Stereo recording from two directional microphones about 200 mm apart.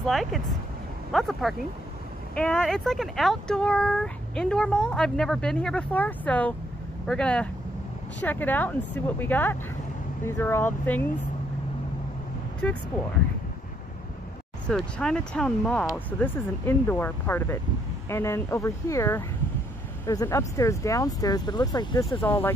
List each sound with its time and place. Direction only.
0.0 s speech: centre (ahead or behind)
12.6 s speech: 5° left (ahead or behind)
14.7 s speech: 5° left (ahead or behind)